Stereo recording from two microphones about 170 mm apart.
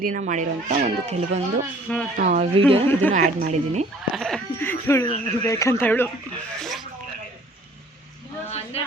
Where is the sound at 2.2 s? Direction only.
45° right (ahead or behind).